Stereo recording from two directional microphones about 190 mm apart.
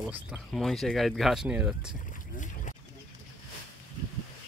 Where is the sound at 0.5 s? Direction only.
Centre (ahead or behind).